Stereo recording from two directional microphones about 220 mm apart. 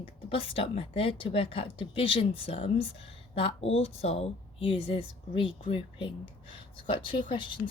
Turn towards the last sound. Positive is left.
turn(degrees=20)  # may be behind; listen again after turning